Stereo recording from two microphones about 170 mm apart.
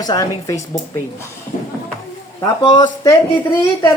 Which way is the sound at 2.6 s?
25° left (ahead or behind).